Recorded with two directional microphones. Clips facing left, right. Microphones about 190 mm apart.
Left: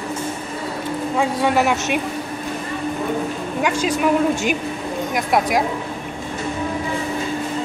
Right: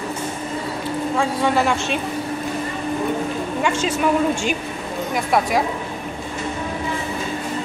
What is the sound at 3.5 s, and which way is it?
Speech, 5° left (ahead or behind).